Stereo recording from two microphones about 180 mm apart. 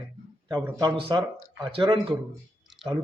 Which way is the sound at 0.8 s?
30° right (ahead or behind).